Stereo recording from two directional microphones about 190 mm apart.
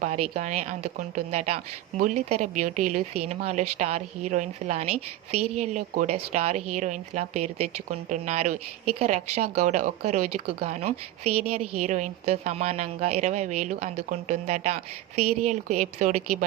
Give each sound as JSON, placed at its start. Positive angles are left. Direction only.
{"t": 0.0, "sound": "a woman's voice", "side_deg": -40}